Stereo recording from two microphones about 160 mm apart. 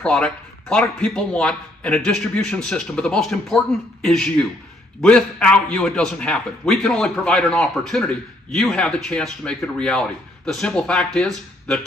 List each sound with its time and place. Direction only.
0.0 s a man's voice: 5° left (ahead or behind)